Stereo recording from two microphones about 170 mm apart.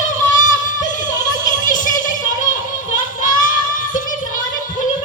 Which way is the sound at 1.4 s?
50° left (ahead or behind).